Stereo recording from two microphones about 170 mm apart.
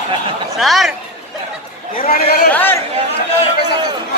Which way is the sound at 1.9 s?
60° left (ahead or behind).